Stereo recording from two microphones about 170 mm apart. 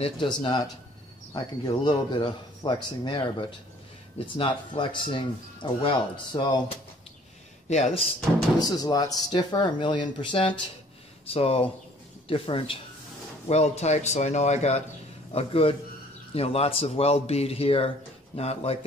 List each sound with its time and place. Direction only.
0.0 s speech: 30° left (ahead or behind)
7.7 s speech: 40° left (ahead or behind)
8.5 s speech: 25° left (ahead or behind)